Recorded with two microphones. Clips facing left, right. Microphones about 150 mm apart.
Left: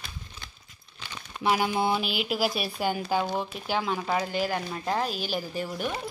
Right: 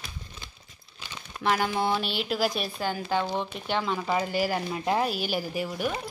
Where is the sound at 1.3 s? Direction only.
5° left (ahead or behind).